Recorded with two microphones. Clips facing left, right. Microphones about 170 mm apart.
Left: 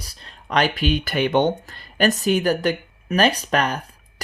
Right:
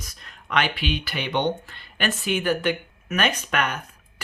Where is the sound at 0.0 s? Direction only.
30° left (ahead or behind).